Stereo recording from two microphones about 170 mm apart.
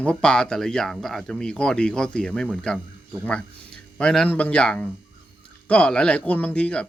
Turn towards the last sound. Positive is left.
turn(degrees=5)  # may be behind; listen again after turning